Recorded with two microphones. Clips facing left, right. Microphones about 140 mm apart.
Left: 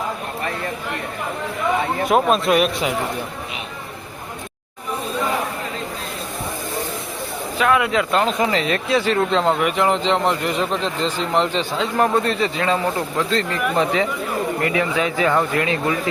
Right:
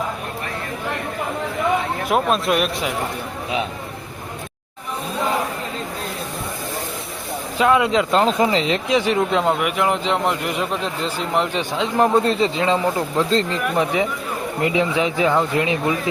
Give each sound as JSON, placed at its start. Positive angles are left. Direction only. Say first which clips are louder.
{"t": 2.0, "sound": "speech", "louder": "left 2 dB", "side_deg": 0}
{"t": 7.6, "sound": "speech", "louder": "right 2 dB", "side_deg": -25}